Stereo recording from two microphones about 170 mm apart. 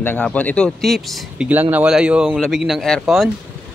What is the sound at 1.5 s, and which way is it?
A man's voice, 10° right (ahead or behind).